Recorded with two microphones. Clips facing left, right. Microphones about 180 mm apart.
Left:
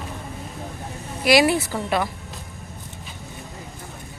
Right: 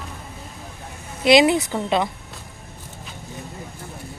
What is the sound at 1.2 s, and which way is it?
Speech, 20° right (ahead or behind).